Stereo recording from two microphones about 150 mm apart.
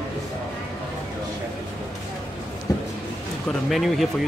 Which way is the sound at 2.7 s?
20° left (ahead or behind).